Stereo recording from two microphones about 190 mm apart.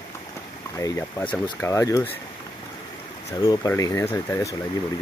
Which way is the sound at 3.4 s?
15° left (ahead or behind).